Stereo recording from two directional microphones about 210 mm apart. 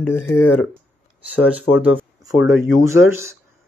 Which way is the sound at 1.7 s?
90° left.